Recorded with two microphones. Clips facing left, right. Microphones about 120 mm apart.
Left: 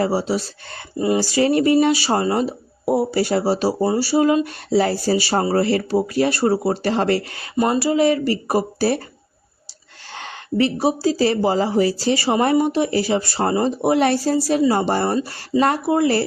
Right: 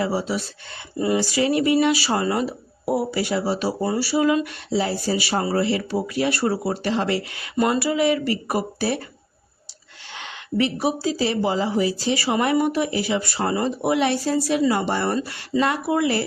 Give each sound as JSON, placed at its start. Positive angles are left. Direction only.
{"t": 0.0, "sound": "speech", "side_deg": 30}
{"t": 4.4, "sound": "speech", "side_deg": 45}
{"t": 5.1, "sound": "speech", "side_deg": 35}
{"t": 6.9, "sound": "speech", "side_deg": 45}
{"t": 7.5, "sound": "speech", "side_deg": 25}
{"t": 10.2, "sound": "speech", "side_deg": 40}
{"t": 12.1, "sound": "speech", "side_deg": 30}
{"t": 14.0, "sound": "speech", "side_deg": 45}
{"t": 14.3, "sound": "speech", "side_deg": 30}